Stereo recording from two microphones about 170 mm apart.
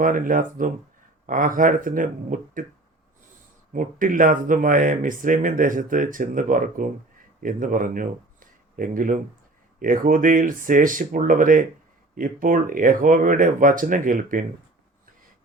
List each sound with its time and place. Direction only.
0.0 s speech: 55° right (ahead or behind)
3.7 s speech: 50° right (ahead or behind)